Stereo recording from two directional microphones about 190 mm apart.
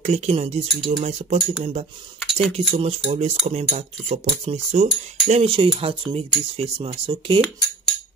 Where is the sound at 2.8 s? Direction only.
35° right (ahead or behind).